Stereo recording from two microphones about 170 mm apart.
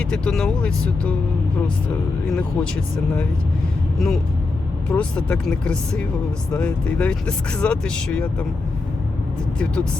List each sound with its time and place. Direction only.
0.0 s speech: 5° left (ahead or behind)
2.3 s speech: 5° left (ahead or behind)
3.9 s speech: centre (ahead or behind)